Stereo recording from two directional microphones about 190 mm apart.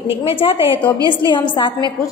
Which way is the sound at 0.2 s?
30° left (ahead or behind).